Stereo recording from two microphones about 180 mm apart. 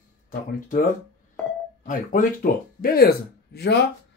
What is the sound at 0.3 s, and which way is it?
Speech, 50° left (ahead or behind).